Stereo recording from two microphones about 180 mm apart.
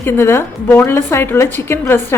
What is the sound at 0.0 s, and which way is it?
A woman's voice, 15° left (ahead or behind).